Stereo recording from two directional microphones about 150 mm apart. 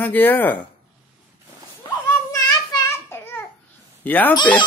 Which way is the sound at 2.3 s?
20° left (ahead or behind).